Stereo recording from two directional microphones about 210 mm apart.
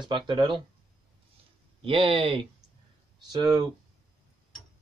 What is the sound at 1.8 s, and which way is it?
Speech, 25° right (ahead or behind).